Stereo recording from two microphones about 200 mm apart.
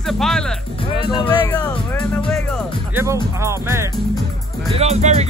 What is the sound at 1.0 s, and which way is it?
Speech, 25° left (ahead or behind).